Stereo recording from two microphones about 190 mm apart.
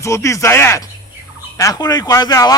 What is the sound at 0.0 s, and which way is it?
Speech, 15° left (ahead or behind).